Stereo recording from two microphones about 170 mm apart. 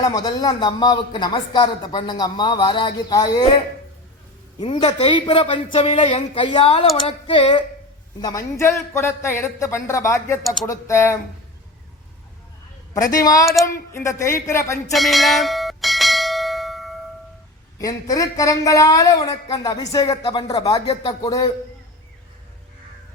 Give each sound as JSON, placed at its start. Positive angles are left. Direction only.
{"t": 0.0, "sound": "speech", "side_deg": 25}
{"t": 4.6, "sound": "speech", "side_deg": 25}
{"t": 8.2, "sound": "speech", "side_deg": 20}
{"t": 10.4, "sound": "speech", "side_deg": 0}
{"t": 10.7, "sound": "speech", "side_deg": 15}
{"t": 12.9, "sound": "speech", "side_deg": 20}
{"t": 14.9, "sound": "bell", "side_deg": 0}
{"t": 17.7, "sound": "speech", "side_deg": 20}